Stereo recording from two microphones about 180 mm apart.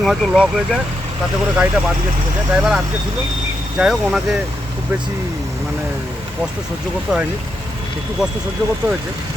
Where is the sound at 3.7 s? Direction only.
5° right (ahead or behind).